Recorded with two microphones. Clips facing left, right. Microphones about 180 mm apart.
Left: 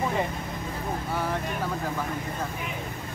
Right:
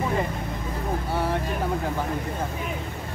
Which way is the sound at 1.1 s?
30° right (ahead or behind).